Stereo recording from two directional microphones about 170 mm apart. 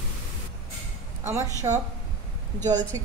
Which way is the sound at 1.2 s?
15° right (ahead or behind).